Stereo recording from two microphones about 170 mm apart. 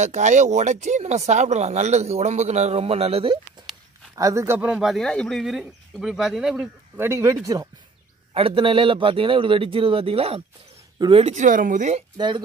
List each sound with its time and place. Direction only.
0.0 s speech: 45° right (ahead or behind)
4.1 s speech: 20° right (ahead or behind)
7.1 s speech: 15° right (ahead or behind)
8.3 s speech: 35° right (ahead or behind)
11.3 s speech: 50° right (ahead or behind)
12.2 s speech: 25° right (ahead or behind)